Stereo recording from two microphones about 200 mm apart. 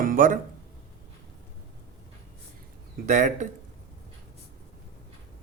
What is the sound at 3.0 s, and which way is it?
Speech, 40° right (ahead or behind).